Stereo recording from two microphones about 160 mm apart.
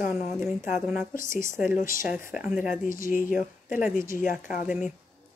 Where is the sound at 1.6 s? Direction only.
55° left (ahead or behind).